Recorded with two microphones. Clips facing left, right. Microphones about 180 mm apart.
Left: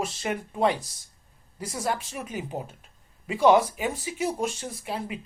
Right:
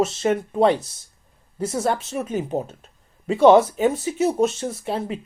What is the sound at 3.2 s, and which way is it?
Speech, 25° right (ahead or behind).